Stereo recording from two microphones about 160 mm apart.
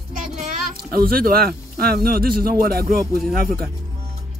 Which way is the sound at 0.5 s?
65° right (ahead or behind).